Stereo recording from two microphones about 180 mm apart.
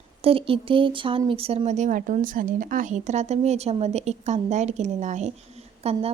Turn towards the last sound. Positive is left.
turn(degrees=-35)  # may be behind; listen again after turning